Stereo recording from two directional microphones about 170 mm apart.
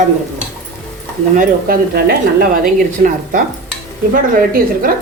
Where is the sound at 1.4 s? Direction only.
60° right (ahead or behind).